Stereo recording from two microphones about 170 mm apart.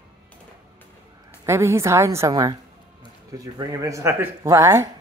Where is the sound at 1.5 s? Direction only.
15° right (ahead or behind).